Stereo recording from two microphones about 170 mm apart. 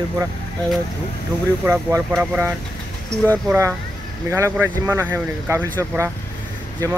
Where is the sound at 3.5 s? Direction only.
15° right (ahead or behind).